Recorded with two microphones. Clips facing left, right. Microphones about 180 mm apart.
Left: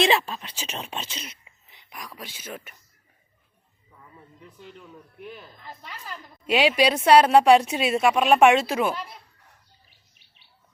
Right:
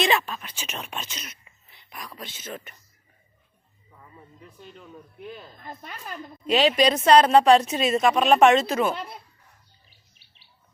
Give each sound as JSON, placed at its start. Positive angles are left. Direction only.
{"t": 0.0, "sound": "speech", "side_deg": 30}
{"t": 5.6, "sound": "a woman's voice", "side_deg": -50}
{"t": 6.5, "sound": "speech", "side_deg": 10}